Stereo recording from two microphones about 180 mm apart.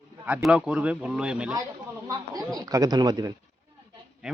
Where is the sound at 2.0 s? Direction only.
20° right (ahead or behind).